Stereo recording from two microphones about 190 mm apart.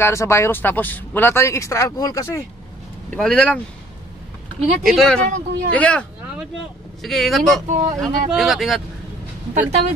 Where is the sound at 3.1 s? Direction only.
5° left (ahead or behind).